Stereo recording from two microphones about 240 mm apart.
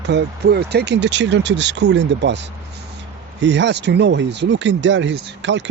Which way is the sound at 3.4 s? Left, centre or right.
Right.